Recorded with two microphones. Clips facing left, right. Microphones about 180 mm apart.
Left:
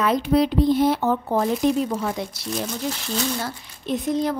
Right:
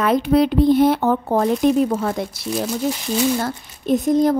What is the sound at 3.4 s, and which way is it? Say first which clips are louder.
Speech: right 6 dB; 45° right (ahead or behind).